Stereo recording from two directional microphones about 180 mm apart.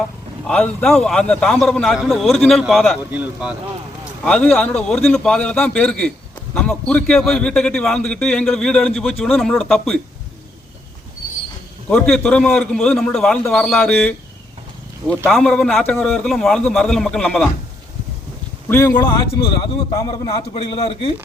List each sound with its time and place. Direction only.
0.4 s a man's voice: 5° left (ahead or behind)
4.2 s a man's voice: 5° left (ahead or behind)
11.9 s a man's voice: 5° left (ahead or behind)
15.3 s a man's voice: centre (ahead or behind)
18.7 s speech: 15° left (ahead or behind)
19.4 s a man's voice: 25° left (ahead or behind)
20.5 s a man's voice: 35° left (ahead or behind)